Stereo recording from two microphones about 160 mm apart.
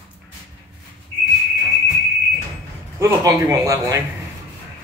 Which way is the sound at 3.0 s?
20° right (ahead or behind).